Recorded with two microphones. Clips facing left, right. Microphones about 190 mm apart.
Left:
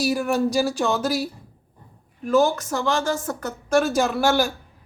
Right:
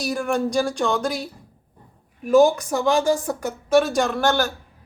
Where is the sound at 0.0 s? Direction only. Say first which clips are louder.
Left 2 dB; 5° left (ahead or behind).